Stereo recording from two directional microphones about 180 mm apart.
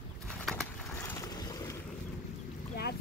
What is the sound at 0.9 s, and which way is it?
Boat, 15° left (ahead or behind).